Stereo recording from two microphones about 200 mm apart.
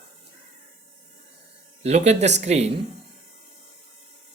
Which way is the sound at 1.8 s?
35° right (ahead or behind).